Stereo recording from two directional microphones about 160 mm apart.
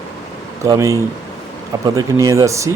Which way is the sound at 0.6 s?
20° right (ahead or behind).